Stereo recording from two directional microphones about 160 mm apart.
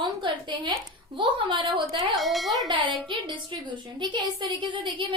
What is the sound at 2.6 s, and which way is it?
A woman's voice, 30° right (ahead or behind).